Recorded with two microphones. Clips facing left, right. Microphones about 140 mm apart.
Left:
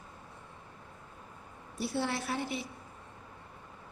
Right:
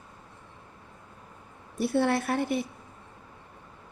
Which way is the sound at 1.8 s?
55° right (ahead or behind).